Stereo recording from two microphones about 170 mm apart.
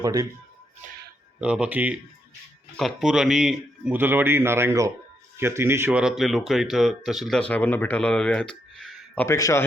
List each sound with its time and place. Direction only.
0.0 s speech: 20° right (ahead or behind)
1.4 s a man's voice: 5° right (ahead or behind)
9.2 s a man's voice: 15° left (ahead or behind)